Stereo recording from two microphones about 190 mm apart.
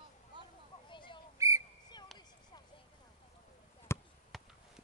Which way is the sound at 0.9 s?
25° left (ahead or behind).